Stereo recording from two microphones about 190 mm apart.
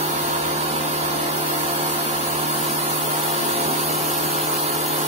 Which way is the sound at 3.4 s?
35° right (ahead or behind).